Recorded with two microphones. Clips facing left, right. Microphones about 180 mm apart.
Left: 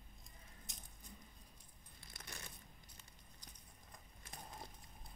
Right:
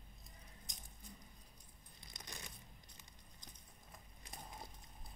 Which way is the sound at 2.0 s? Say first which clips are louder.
Right 1 dB; 15° right (ahead or behind).